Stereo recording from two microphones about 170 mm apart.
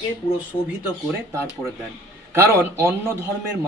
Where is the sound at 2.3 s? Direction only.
15° right (ahead or behind).